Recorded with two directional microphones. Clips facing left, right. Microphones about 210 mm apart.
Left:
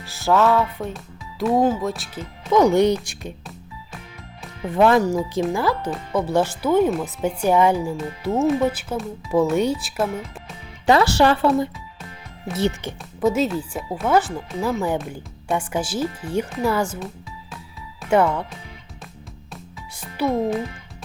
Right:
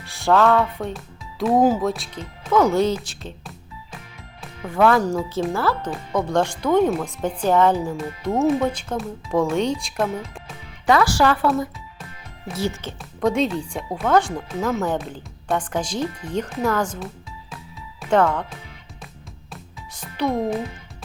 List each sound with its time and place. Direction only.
0.0 s speech: centre (ahead or behind)
2.5 s speech: 15° left (ahead or behind)
4.7 s speech: 20° left (ahead or behind)
8.4 s speech: centre (ahead or behind)
10.8 s speech: 25° left (ahead or behind)
13.0 s speech: 5° left (ahead or behind)
18.1 s speech: 10° left (ahead or behind)
20.0 s a child's voice: 5° left (ahead or behind)